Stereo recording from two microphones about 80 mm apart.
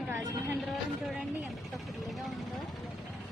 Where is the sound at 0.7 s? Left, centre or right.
Centre.